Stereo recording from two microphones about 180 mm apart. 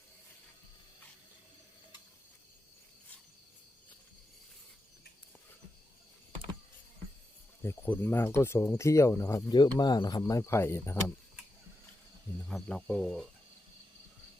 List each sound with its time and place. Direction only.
7.6 s speech: 15° left (ahead or behind)
12.5 s speech: 5° left (ahead or behind)